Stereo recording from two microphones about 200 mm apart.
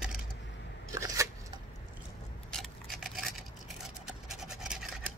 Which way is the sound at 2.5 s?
Centre (ahead or behind).